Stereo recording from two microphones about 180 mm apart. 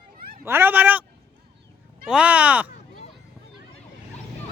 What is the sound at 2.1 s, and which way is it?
Speech, 5° right (ahead or behind).